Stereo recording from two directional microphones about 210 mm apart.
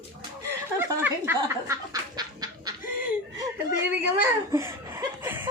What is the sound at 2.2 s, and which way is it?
Goose, 20° right (ahead or behind).